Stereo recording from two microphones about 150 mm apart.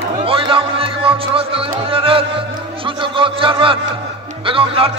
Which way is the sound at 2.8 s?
35° right (ahead or behind).